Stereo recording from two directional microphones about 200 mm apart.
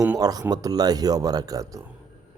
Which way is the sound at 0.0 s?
15° right (ahead or behind).